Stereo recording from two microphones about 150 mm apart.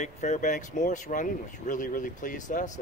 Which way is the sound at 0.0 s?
50° left (ahead or behind).